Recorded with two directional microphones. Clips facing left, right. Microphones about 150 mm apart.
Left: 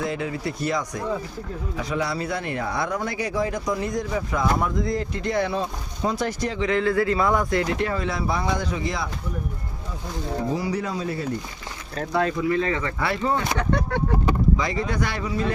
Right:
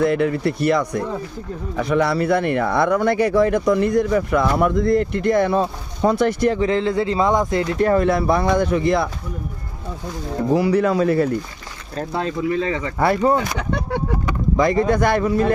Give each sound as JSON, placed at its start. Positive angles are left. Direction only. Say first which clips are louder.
{"t": 0.0, "sound": "speech", "louder": "right 9 dB", "side_deg": -60}
{"t": 6.6, "sound": "speech", "louder": "right 3 dB", "side_deg": -30}
{"t": 7.8, "sound": "speech", "louder": "right 9 dB", "side_deg": -50}
{"t": 10.5, "sound": "speech", "louder": "right 14 dB", "side_deg": -65}
{"t": 12.1, "sound": "speech", "louder": "even", "side_deg": -25}
{"t": 13.0, "sound": "speech", "louder": "right 11 dB", "side_deg": -45}
{"t": 14.5, "sound": "speech", "louder": "right 8 dB", "side_deg": -50}